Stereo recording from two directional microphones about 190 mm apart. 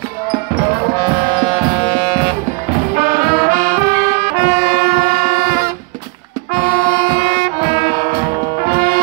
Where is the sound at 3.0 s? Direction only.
50° right (ahead or behind).